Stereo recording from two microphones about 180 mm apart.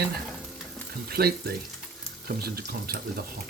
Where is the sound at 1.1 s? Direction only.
60° right (ahead or behind).